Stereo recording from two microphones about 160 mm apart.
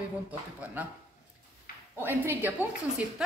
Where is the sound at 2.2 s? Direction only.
10° right (ahead or behind).